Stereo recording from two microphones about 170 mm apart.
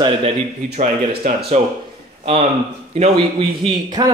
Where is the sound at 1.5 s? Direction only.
40° right (ahead or behind).